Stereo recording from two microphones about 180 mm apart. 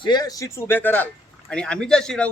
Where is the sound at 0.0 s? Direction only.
25° left (ahead or behind).